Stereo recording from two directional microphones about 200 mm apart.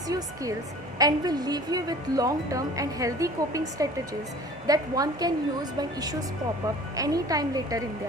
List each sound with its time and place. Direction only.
0.9 s a woman's voice: 20° right (ahead or behind)